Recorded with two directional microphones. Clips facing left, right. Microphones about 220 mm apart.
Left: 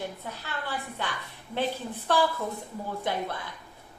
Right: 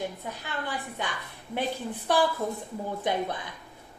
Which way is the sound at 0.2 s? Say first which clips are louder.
Right 1 dB; 15° right (ahead or behind).